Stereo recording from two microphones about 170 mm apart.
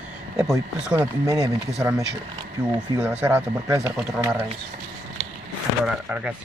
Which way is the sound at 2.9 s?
10° right (ahead or behind).